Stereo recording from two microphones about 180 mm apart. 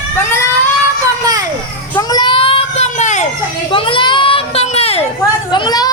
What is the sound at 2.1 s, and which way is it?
Baby cry, 25° left (ahead or behind).